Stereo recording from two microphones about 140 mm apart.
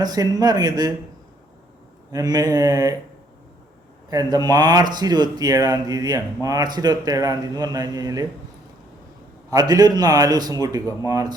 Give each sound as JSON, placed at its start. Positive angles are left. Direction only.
{"t": 0.0, "sound": "speech", "side_deg": -25}
{"t": 2.1, "sound": "speech", "side_deg": -30}
{"t": 4.1, "sound": "speech", "side_deg": -25}
{"t": 9.5, "sound": "speech", "side_deg": -25}